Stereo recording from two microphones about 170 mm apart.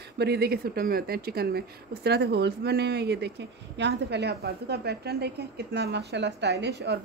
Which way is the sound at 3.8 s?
85° right.